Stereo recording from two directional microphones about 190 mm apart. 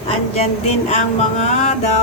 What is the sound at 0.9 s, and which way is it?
Music, 40° left (ahead or behind).